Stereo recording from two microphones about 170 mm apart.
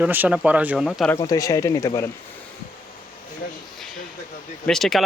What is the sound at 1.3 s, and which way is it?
Speech, 20° left (ahead or behind).